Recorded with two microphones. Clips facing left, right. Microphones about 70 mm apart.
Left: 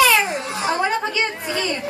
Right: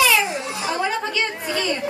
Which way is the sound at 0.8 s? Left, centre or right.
Centre.